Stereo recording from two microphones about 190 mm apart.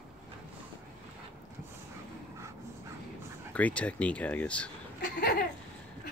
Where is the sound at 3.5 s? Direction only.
5° left (ahead or behind).